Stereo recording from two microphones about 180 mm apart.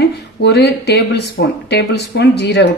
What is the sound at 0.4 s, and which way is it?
Speech, 65° left (ahead or behind).